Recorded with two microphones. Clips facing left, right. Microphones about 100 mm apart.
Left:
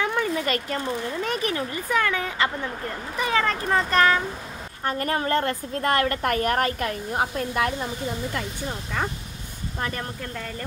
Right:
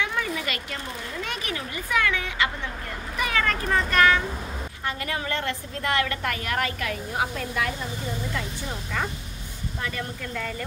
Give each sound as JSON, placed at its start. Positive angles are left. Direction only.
{"t": 0.1, "sound": "a sound", "side_deg": 35}
{"t": 1.2, "sound": "a woman's voice", "side_deg": 35}
{"t": 9.8, "sound": "a woman's voice", "side_deg": 40}